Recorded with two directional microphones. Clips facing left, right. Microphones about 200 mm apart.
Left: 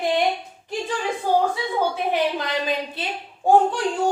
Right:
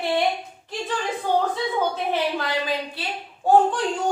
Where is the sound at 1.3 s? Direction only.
10° left (ahead or behind).